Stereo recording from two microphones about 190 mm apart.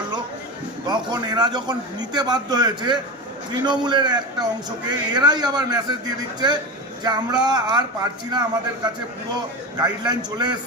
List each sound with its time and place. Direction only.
0.9 s a man's voice: 20° right (ahead or behind)